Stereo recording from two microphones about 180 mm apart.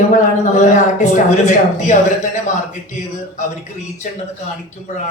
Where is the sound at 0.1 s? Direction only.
45° left (ahead or behind).